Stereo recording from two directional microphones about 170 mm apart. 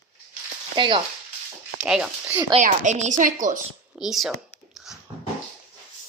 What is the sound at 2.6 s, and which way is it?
A woman's voice, 45° right (ahead or behind).